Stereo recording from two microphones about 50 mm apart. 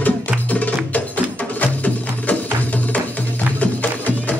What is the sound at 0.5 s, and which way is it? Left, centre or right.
Music, left.